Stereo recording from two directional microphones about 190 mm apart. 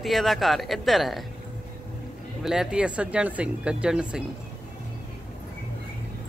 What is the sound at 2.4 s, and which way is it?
Speech, 5° right (ahead or behind).